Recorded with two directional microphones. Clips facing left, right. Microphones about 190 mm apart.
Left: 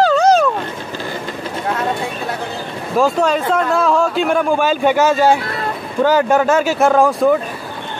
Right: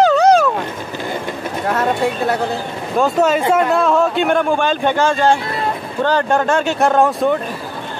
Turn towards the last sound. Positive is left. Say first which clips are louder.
# left 2 dB
turn(degrees=0)  # may be behind; listen again after turning